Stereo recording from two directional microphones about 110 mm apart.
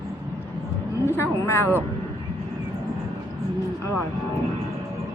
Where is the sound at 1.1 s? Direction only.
25° left (ahead or behind).